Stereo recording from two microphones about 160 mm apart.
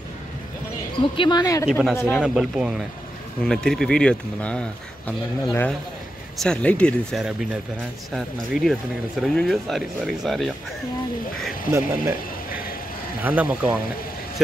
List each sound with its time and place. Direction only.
1.1 s speech: 30° left (ahead or behind)
1.7 s speech: 5° right (ahead or behind)
2.0 s speech: 15° left (ahead or behind)
2.2 s speech: 5° right (ahead or behind)
11.7 s speech: 15° right (ahead or behind)
13.2 s speech: 10° right (ahead or behind)